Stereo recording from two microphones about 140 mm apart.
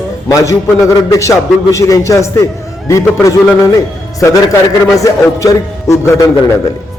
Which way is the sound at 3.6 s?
25° left (ahead or behind).